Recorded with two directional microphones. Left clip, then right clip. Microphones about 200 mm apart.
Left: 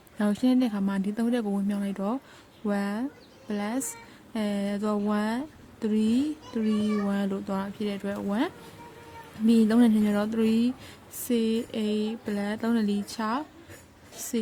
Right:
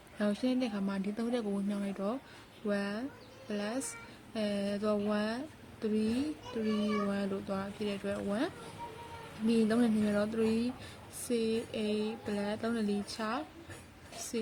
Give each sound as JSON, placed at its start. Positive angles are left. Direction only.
{"t": 0.2, "sound": "speech", "side_deg": 55}